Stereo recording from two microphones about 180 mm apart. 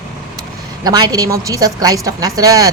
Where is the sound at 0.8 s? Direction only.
20° right (ahead or behind).